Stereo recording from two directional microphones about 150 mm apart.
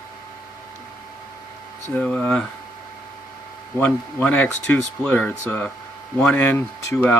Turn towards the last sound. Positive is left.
turn(degrees=10)  # may be behind; listen again after turning